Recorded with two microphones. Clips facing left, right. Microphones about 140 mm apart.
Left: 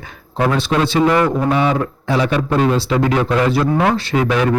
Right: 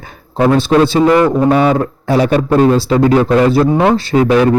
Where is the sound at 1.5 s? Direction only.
40° right (ahead or behind).